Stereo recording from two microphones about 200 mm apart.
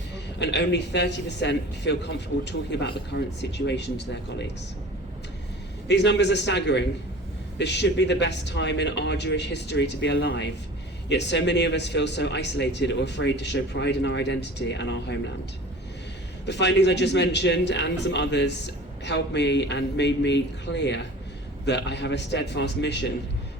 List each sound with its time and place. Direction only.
0.3 s a man's voice: 60° left (ahead or behind)
5.9 s a man's voice: 60° left (ahead or behind)
16.5 s a man's voice: 60° left (ahead or behind)